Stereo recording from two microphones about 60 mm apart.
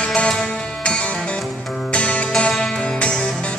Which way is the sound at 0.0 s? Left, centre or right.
Centre.